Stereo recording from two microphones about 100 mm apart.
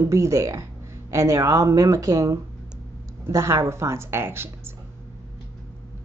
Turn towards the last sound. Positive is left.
turn(degrees=-25)  # may be behind; listen again after turning